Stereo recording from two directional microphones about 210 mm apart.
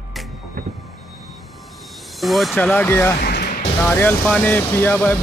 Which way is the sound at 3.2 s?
50° left (ahead or behind).